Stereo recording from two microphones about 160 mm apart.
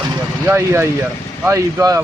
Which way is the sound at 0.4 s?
15° right (ahead or behind).